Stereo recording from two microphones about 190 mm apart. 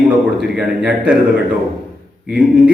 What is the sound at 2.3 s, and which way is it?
Speech, 5° right (ahead or behind).